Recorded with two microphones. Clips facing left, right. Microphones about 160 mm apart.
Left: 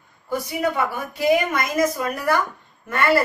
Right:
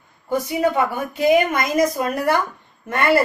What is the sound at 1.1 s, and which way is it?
A woman's voice, 20° right (ahead or behind).